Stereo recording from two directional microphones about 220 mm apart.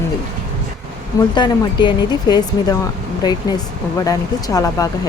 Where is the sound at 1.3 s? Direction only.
20° left (ahead or behind).